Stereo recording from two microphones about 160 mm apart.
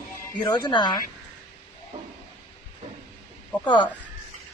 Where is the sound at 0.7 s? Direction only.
30° left (ahead or behind).